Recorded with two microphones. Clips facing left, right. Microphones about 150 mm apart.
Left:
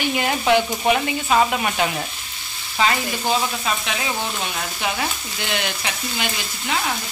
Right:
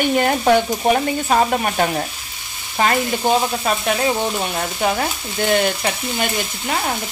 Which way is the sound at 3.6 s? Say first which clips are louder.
Right 6 dB; 45° right (ahead or behind).